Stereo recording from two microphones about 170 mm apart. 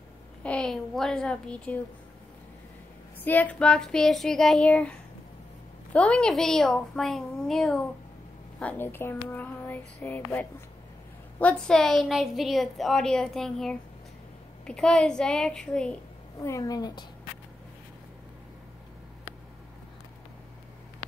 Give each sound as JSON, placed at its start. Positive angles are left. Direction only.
{"t": 0.4, "sound": "a woman's voice", "side_deg": 5}
{"t": 3.2, "sound": "a woman's voice", "side_deg": 10}
{"t": 5.9, "sound": "a woman's voice", "side_deg": 5}
{"t": 16.4, "sound": "a woman's voice", "side_deg": 20}